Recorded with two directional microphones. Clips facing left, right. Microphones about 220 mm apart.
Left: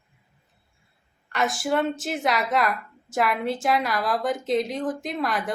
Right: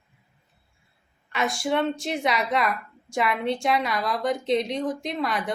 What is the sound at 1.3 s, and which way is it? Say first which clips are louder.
A woman's voice: left 1 dB; centre (ahead or behind).